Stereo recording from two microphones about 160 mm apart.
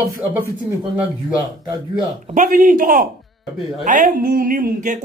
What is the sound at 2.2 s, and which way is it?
A man's voice, 50° right (ahead or behind).